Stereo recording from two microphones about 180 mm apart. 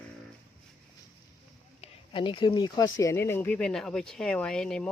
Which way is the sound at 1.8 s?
30° left (ahead or behind).